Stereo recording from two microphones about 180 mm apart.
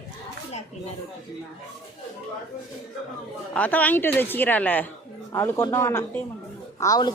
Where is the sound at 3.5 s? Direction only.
10° left (ahead or behind).